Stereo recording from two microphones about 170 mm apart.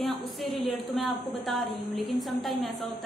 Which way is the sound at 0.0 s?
Centre (ahead or behind).